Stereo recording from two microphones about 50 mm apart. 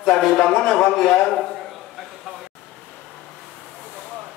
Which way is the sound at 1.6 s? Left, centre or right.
Centre.